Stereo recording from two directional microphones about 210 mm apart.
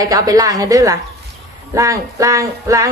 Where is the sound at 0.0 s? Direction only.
15° right (ahead or behind).